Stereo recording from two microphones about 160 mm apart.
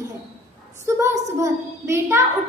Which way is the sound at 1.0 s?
20° right (ahead or behind).